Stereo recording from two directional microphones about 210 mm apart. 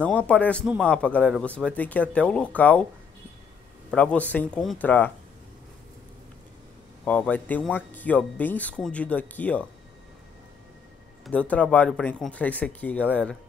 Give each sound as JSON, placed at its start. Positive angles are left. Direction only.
{"t": 0.0, "sound": "speech", "side_deg": 5}
{"t": 3.9, "sound": "speech", "side_deg": 5}
{"t": 7.1, "sound": "speech", "side_deg": 5}
{"t": 11.2, "sound": "speech", "side_deg": 5}